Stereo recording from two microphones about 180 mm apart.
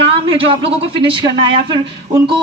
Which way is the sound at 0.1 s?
30° right (ahead or behind).